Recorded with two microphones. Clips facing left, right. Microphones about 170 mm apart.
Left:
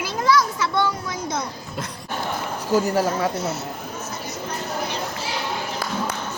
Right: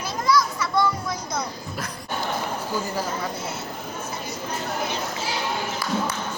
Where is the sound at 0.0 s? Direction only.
90° left.